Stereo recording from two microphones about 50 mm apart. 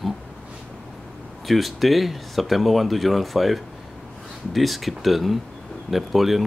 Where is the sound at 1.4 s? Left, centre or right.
Centre.